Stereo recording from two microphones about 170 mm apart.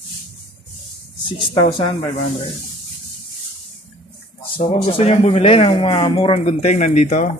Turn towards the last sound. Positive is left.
turn(degrees=45)  # may be behind; listen again after turning